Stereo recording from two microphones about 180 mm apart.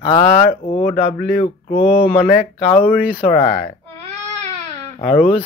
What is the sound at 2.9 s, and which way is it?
Speech, 5° right (ahead or behind).